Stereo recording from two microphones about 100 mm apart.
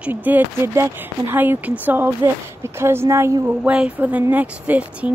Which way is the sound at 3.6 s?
10° right (ahead or behind).